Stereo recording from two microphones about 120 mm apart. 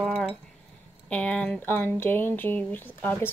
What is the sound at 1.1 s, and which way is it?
Speech, 10° left (ahead or behind).